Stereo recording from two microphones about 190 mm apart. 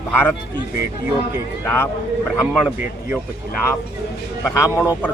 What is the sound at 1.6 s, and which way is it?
Speech, 10° left (ahead or behind).